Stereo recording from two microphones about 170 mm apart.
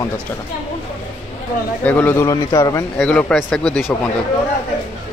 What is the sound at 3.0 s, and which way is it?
Speech, 5° left (ahead or behind).